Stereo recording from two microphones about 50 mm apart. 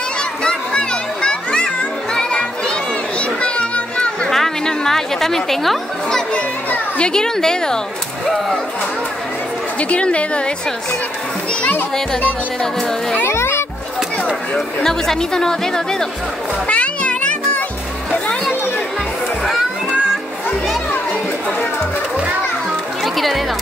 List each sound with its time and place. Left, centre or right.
0.2 s music: centre
3.2 s children playing: left
4.3 s a sound: centre
6.0 s speech: centre
9.8 s speech: left
13.3 s music: left
14.8 s speech: centre
16.6 s music: left
23.0 s music: centre